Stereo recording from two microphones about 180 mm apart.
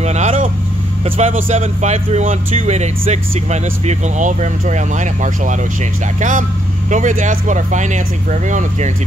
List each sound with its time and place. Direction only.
0.0 s vehicle: 40° right (ahead or behind)
1.0 s speech: 30° right (ahead or behind)